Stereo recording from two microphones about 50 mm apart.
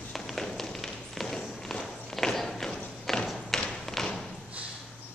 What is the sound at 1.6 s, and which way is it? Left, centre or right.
Walk, centre.